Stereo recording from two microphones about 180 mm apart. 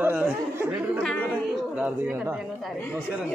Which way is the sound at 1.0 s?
5° left (ahead or behind).